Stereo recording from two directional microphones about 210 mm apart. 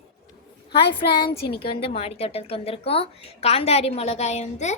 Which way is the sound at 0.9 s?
25° left (ahead or behind).